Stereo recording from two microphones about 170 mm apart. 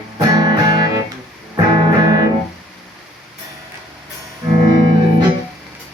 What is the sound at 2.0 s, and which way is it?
Music, 25° right (ahead or behind).